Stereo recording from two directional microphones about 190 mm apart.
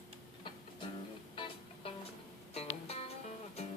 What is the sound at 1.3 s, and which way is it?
Music, 30° left (ahead or behind).